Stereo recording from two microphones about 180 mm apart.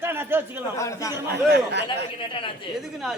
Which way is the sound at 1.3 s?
70° right (ahead or behind).